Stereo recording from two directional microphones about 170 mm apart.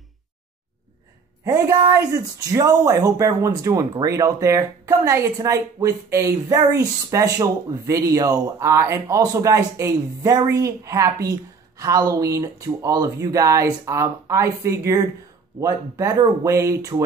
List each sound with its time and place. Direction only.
1.4 s speech: 20° right (ahead or behind)